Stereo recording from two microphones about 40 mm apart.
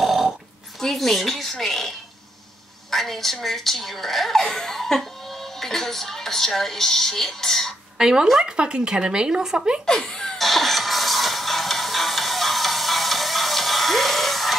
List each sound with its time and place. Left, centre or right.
0.0 s burping: centre
0.7 s speech: centre
8.0 s speech: centre
9.8 s speech: centre
10.4 s music: centre